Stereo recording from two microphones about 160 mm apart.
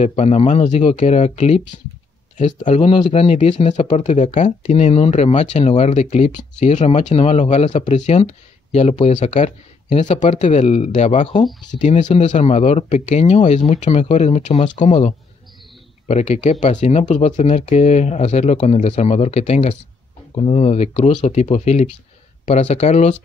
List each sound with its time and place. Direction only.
0.0 s speech: 40° left (ahead or behind)